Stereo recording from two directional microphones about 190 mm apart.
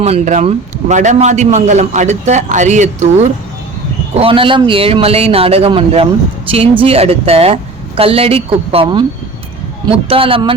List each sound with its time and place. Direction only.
0.0 s a man's voice: 35° right (ahead or behind)